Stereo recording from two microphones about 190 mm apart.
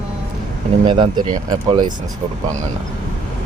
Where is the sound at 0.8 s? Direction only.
25° right (ahead or behind).